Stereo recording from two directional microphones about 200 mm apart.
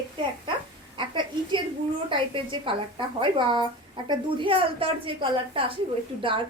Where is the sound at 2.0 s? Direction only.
25° right (ahead or behind).